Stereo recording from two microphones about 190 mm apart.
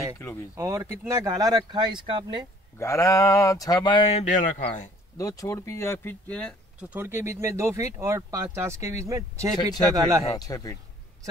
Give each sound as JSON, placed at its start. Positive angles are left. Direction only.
{"t": 0.6, "sound": "speech", "side_deg": -15}
{"t": 2.8, "sound": "speech", "side_deg": 15}
{"t": 5.1, "sound": "speech", "side_deg": 20}
{"t": 6.8, "sound": "speech", "side_deg": -10}
{"t": 10.3, "sound": "speech", "side_deg": 20}